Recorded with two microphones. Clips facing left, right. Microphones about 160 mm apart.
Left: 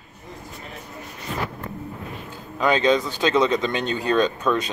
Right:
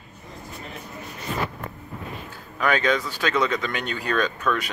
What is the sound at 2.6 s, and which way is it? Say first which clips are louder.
Speech: left 3 dB; 20° left (ahead or behind).